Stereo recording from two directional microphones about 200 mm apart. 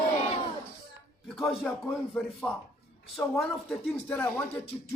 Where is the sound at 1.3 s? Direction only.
Centre (ahead or behind).